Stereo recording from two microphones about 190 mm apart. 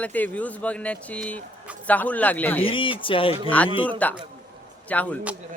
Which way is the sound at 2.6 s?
25° left (ahead or behind).